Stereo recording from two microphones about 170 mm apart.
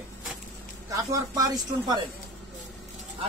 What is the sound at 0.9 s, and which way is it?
Speech, 20° right (ahead or behind).